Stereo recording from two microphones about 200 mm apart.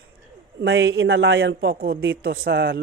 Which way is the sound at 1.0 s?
55° right (ahead or behind).